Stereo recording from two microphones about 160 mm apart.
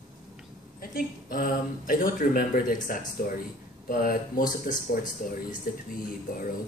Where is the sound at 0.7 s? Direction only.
65° left (ahead or behind).